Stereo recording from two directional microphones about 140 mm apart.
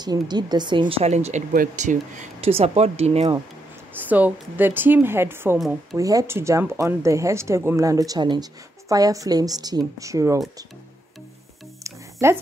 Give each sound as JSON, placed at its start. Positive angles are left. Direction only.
{"t": 0.0, "sound": "speech", "side_deg": -30}
{"t": 1.5, "sound": "speech", "side_deg": -70}
{"t": 2.5, "sound": "speech", "side_deg": -45}
{"t": 3.9, "sound": "speech", "side_deg": -10}
{"t": 11.8, "sound": "music", "side_deg": -20}